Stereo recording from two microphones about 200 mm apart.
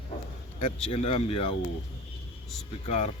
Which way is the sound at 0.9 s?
30° left (ahead or behind).